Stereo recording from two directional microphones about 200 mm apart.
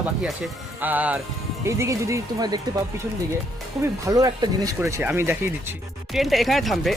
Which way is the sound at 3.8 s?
15° right (ahead or behind).